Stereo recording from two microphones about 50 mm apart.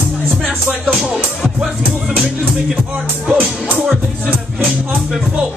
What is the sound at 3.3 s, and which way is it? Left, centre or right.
Speech, right.